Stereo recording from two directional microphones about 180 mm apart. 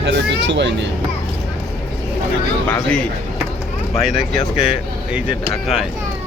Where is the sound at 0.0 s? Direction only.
75° right (ahead or behind).